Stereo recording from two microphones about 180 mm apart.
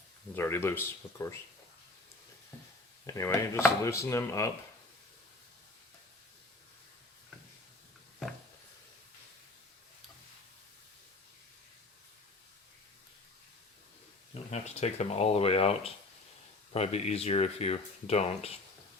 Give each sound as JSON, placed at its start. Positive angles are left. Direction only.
{"t": 0.3, "sound": "speech", "side_deg": 15}
{"t": 3.1, "sound": "speech", "side_deg": 15}
{"t": 14.5, "sound": "speech", "side_deg": 35}